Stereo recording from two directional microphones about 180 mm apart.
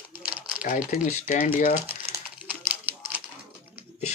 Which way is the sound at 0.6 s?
50° left (ahead or behind).